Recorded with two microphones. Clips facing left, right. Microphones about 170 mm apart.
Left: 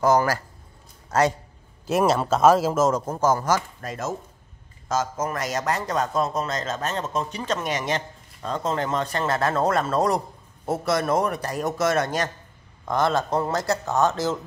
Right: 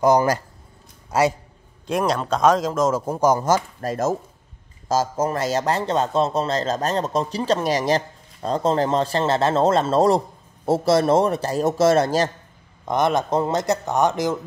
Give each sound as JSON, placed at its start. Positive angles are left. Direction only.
{"t": 0.0, "sound": "a man's voice", "side_deg": -20}
{"t": 1.9, "sound": "speech", "side_deg": 5}
{"t": 2.9, "sound": "speech", "side_deg": -15}
{"t": 3.8, "sound": "a man's voice", "side_deg": -40}
{"t": 12.8, "sound": "a man's voice", "side_deg": -20}